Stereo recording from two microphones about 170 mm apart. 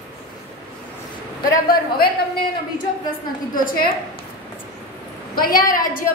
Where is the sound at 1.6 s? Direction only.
65° left (ahead or behind).